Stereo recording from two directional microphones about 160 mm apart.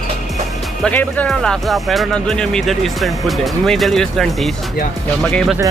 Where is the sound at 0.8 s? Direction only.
10° left (ahead or behind).